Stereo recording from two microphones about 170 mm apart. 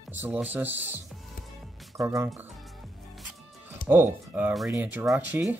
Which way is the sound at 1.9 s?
15° right (ahead or behind).